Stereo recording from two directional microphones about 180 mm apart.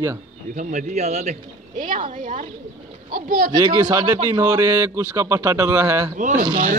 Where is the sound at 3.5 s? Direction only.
20° right (ahead or behind).